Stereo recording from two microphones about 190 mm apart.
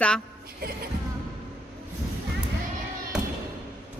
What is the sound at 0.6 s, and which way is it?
Music, 50° right (ahead or behind).